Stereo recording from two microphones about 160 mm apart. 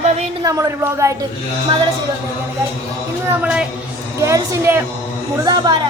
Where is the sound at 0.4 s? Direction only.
20° right (ahead or behind).